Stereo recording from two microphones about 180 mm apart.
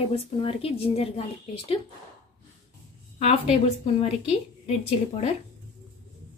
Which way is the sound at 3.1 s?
35° left (ahead or behind).